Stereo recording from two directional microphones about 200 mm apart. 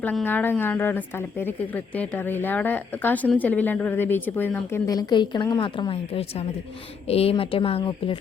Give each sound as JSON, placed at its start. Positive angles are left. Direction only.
{"t": 0.0, "sound": "speech", "side_deg": 10}